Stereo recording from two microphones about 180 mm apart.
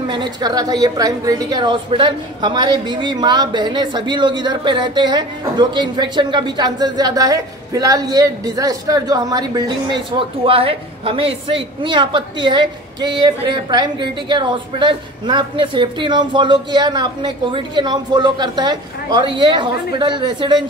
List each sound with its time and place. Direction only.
0.1 s a man's voice: 25° right (ahead or behind)